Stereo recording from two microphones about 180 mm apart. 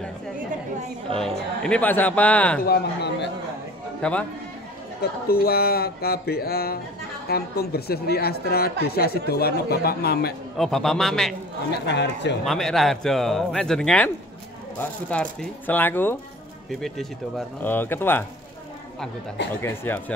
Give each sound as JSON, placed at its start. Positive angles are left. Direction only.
{"t": 1.6, "sound": "speech", "side_deg": 5}
{"t": 2.6, "sound": "speech", "side_deg": 65}
{"t": 4.0, "sound": "speech", "side_deg": 5}
{"t": 5.0, "sound": "speech", "side_deg": 55}
{"t": 10.6, "sound": "speech", "side_deg": 0}
{"t": 11.8, "sound": "speech", "side_deg": 70}
{"t": 12.4, "sound": "speech", "side_deg": 0}
{"t": 16.8, "sound": "speech", "side_deg": 0}
{"t": 19.6, "sound": "speech", "side_deg": 15}